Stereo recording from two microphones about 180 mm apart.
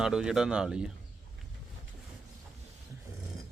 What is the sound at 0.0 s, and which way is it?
Speech, 5° right (ahead or behind).